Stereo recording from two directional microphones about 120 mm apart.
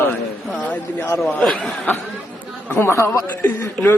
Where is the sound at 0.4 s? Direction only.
10° left (ahead or behind).